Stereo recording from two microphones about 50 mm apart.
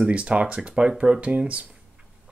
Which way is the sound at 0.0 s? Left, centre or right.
Right.